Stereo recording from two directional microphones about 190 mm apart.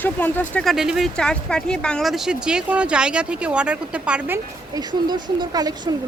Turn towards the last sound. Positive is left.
turn(degrees=-20)  # may be behind; listen again after turning